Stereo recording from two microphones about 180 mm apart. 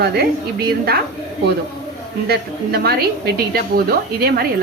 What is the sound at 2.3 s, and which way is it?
A woman's voice, 60° right (ahead or behind).